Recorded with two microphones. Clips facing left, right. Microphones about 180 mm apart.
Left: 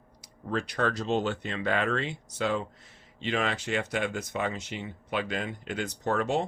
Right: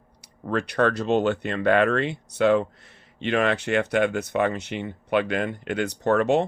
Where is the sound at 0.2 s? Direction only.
65° right (ahead or behind).